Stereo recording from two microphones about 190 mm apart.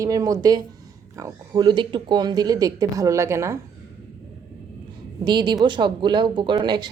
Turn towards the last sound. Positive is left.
turn(degrees=-25)  # may be behind; listen again after turning